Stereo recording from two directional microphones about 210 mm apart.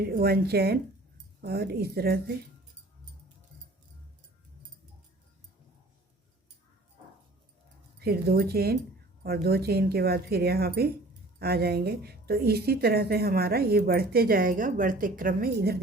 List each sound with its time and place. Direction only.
0.0 s a woman's voice: 50° right (ahead or behind)
7.9 s a woman's voice: 50° right (ahead or behind)